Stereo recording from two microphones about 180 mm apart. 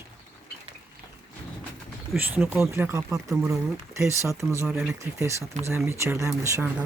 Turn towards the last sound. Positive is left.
turn(degrees=-15)  # may be behind; listen again after turning